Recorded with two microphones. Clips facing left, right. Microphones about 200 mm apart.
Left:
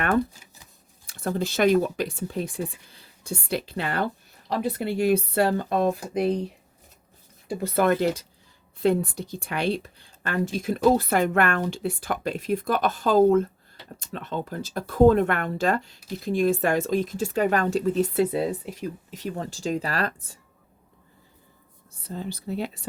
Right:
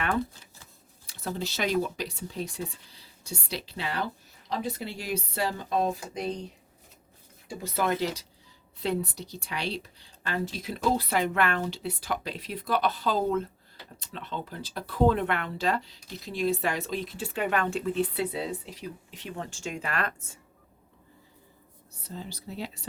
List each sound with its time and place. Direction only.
0.3 s shuffling cards: 15° left (ahead or behind)
1.0 s speech: 50° left (ahead or behind)
7.4 s speech: 55° left (ahead or behind); by 20.4 s 35° left (ahead or behind)
22.0 s speech: 55° left (ahead or behind)